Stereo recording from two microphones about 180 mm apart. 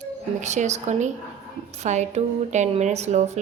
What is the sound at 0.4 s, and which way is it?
A woman's voice, 40° right (ahead or behind).